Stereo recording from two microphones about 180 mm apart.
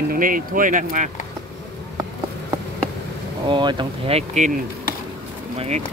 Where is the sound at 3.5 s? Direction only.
25° right (ahead or behind).